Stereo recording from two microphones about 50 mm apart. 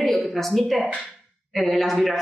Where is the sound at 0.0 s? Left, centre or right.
Centre.